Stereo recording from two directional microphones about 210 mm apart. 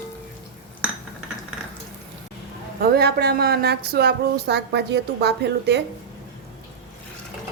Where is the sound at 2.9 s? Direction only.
50° right (ahead or behind).